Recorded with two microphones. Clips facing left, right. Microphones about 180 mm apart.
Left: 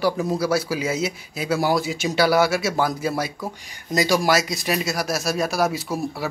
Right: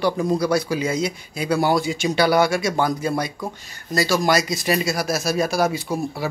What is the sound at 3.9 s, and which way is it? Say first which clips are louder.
Speech: even; 15° left (ahead or behind).